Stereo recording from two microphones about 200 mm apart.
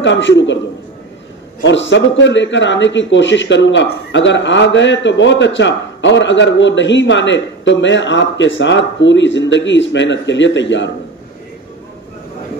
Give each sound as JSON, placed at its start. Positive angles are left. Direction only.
{"t": 0.0, "sound": "a man's voice", "side_deg": 65}
{"t": 1.6, "sound": "a man's voice", "side_deg": 65}